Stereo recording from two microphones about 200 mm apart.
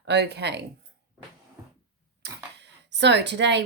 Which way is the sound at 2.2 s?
60° right (ahead or behind).